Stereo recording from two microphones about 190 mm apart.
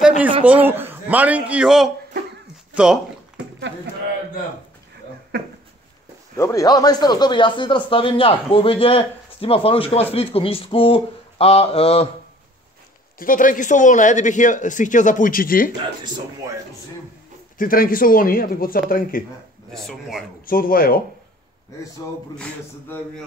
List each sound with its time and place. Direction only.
0.5 s a man's voice: 10° right (ahead or behind)
5.3 s a sound: 55° right (ahead or behind)
6.3 s a man's voice: 15° left (ahead or behind); by 12.1 s 30° left (ahead or behind)
13.2 s speech: 45° left (ahead or behind)
17.6 s speech: 50° left (ahead or behind)
19.7 s a man's voice: centre (ahead or behind)
20.4 s speech: 50° left (ahead or behind)
22.4 s a man's voice: 5° left (ahead or behind)